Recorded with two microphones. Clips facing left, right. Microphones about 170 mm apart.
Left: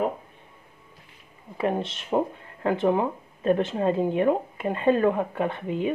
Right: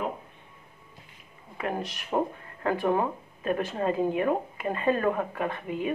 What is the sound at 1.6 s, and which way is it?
Speech, 25° left (ahead or behind).